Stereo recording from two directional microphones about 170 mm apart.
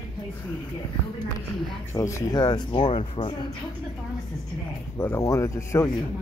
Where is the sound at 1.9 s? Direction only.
15° left (ahead or behind).